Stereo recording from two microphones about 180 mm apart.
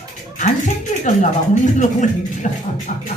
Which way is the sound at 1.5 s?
45° left (ahead or behind).